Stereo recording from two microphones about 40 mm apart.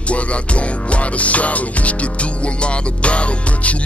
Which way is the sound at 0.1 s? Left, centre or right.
Left.